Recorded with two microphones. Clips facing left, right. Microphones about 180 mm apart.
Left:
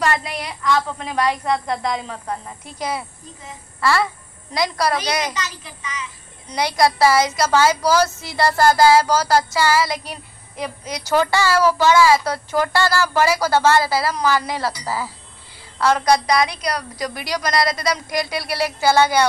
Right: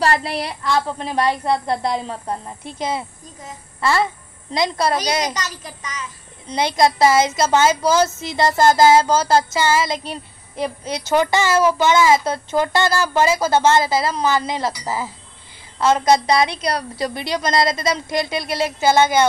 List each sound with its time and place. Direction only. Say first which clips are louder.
0.0 s a woman's voice: right 2 dB; 30° right (ahead or behind)
5.3 s a woman's voice: right 1 dB; 40° right (ahead or behind)
6.5 s a child's voice: right 1 dB; 20° right (ahead or behind)